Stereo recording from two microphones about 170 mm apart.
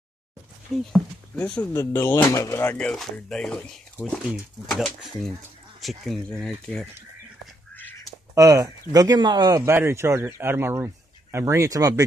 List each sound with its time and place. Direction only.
0.9 s speech: 5° left (ahead or behind)
8.4 s speech: 20° right (ahead or behind)
9.6 s speech: 15° right (ahead or behind)